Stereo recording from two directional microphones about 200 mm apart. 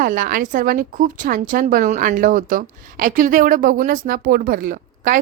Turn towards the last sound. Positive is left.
turn(degrees=-45)  # may be behind; listen again after turning